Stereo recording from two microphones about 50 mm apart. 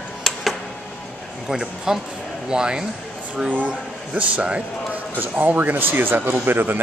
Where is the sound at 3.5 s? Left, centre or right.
Right.